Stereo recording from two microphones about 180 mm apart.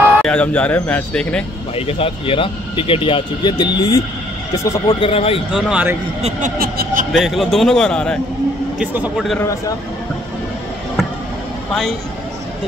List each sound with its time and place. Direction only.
0.2 s speech: 5° left (ahead or behind)
1.8 s speech: 30° left (ahead or behind)
5.1 s speech: 30° left (ahead or behind)
5.5 s a man's voice: 5° right (ahead or behind)
6.6 s a sound: 55° right (ahead or behind)
7.1 s a man's voice: centre (ahead or behind)
8.7 s a man's voice: 5° right (ahead or behind)
9.4 s speech: 15° left (ahead or behind)